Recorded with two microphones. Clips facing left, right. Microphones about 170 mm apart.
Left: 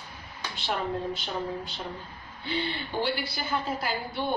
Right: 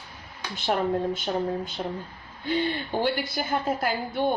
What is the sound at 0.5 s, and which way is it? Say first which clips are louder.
Speech: right 6 dB; 50° right (ahead or behind).